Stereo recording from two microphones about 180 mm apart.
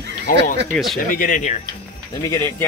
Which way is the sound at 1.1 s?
50° left (ahead or behind).